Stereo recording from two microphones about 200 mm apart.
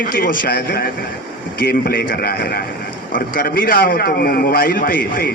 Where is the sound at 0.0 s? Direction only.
45° left (ahead or behind).